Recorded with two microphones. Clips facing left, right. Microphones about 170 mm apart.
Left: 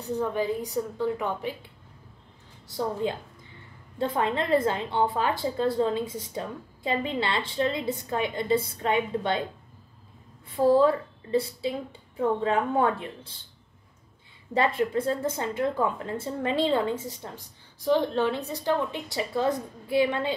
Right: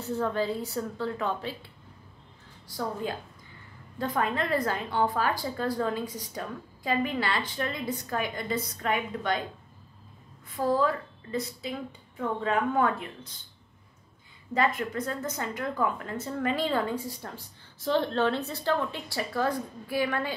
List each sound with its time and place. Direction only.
0.0 s a woman's voice: 15° left (ahead or behind)
2.7 s speech: 25° left (ahead or behind)
10.5 s speech: 30° left (ahead or behind)
14.5 s speech: 30° left (ahead or behind)